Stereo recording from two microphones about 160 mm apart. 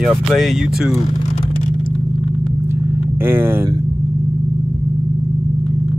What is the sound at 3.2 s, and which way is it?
Speech, 15° right (ahead or behind).